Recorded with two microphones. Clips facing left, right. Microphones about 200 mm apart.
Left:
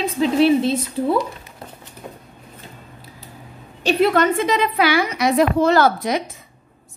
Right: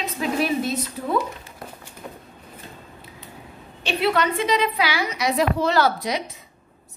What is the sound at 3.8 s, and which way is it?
A woman's voice, 45° left (ahead or behind).